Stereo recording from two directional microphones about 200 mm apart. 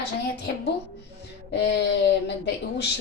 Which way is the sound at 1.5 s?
55° left (ahead or behind).